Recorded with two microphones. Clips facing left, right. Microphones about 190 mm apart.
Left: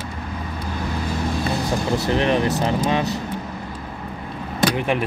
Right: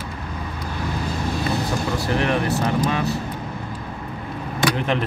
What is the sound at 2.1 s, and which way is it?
Speech, 20° left (ahead or behind).